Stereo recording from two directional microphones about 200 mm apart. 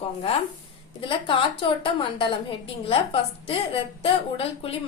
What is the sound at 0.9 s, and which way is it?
A woman's voice, 25° left (ahead or behind).